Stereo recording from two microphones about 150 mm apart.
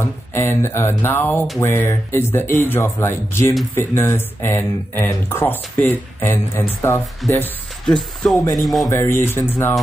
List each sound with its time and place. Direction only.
0.0 s speech: 15° left (ahead or behind)
7.8 s speech: 5° left (ahead or behind)
8.5 s music: centre (ahead or behind)
8.8 s a sound: 20° left (ahead or behind)
9.2 s speech: 15° left (ahead or behind)